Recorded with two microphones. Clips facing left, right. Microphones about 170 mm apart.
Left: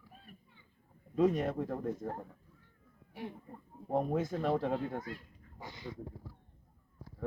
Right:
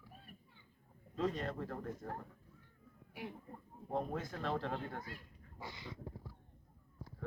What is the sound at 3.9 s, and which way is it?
Speech, 45° left (ahead or behind).